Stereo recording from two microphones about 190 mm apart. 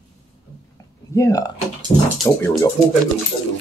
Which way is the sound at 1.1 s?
15° left (ahead or behind).